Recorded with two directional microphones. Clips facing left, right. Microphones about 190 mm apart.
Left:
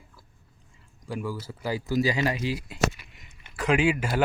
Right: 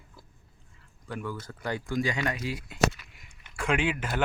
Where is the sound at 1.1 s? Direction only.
10° left (ahead or behind).